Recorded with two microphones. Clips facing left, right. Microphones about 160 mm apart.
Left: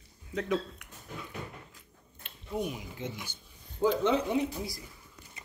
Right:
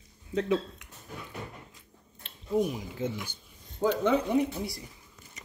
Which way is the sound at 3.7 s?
60° right (ahead or behind).